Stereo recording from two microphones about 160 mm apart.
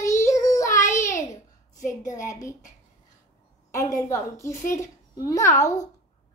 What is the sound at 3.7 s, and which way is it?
A woman's voice, 20° left (ahead or behind).